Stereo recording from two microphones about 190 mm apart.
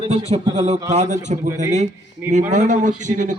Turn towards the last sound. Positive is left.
turn(degrees=-40)  # may be behind; listen again after turning